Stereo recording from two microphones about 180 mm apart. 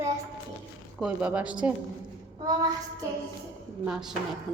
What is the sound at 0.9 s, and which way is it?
Speech, 5° right (ahead or behind).